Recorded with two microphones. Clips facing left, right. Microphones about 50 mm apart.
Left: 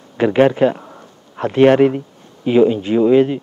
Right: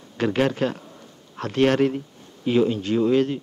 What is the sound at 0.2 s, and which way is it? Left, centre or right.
A man's voice, centre.